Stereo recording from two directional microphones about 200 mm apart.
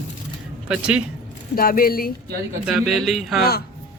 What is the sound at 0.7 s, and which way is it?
Speech, 5° right (ahead or behind).